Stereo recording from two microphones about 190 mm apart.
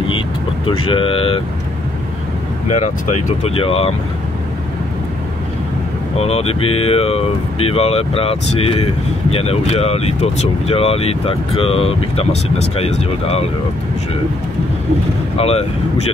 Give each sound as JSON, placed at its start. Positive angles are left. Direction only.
{"t": 0.7, "sound": "speech", "side_deg": 30}
{"t": 2.7, "sound": "speech", "side_deg": 35}
{"t": 6.1, "sound": "speech", "side_deg": 35}
{"t": 15.3, "sound": "speech", "side_deg": 30}